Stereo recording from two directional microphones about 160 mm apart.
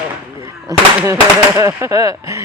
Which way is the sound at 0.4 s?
20° right (ahead or behind).